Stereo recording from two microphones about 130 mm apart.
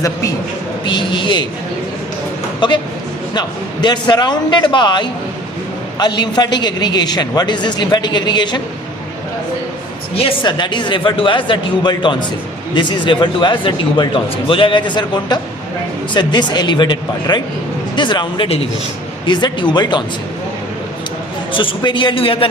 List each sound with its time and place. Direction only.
0.9 s a man's voice: 35° left (ahead or behind)
2.6 s a man's voice: 35° left (ahead or behind)
10.2 s a man's voice: 40° left (ahead or behind)
21.5 s a man's voice: 40° left (ahead or behind)